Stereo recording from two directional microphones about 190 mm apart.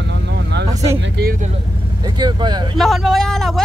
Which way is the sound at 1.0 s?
60° right (ahead or behind).